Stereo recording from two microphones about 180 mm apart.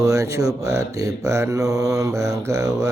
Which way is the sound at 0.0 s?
15° right (ahead or behind).